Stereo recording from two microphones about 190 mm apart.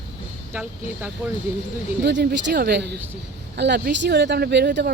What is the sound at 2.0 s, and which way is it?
Speech, 65° right (ahead or behind).